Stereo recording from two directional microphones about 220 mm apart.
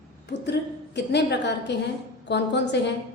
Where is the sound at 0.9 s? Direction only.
50° left (ahead or behind).